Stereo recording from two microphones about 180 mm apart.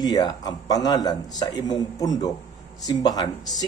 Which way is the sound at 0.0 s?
20° left (ahead or behind).